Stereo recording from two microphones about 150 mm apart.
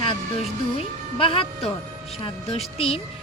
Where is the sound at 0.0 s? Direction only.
40° left (ahead or behind).